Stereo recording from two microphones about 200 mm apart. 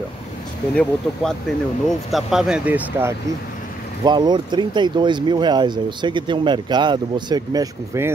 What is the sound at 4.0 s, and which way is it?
Speech, 20° right (ahead or behind).